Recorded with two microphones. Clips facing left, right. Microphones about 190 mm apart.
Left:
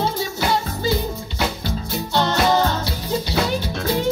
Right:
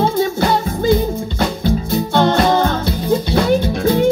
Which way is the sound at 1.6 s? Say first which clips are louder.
Right 9 dB; 55° right (ahead or behind).